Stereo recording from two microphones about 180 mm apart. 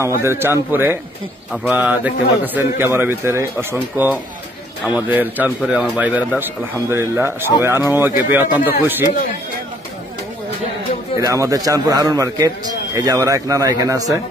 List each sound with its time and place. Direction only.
0.2 s a man's voice: 15° right (ahead or behind)
11.1 s a man's voice: 20° right (ahead or behind)